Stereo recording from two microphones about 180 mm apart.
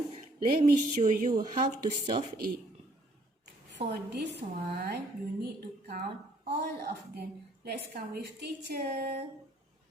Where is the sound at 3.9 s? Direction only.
70° right (ahead or behind).